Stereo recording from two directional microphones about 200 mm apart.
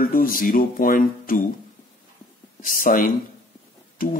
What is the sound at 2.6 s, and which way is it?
Speech, 40° left (ahead or behind).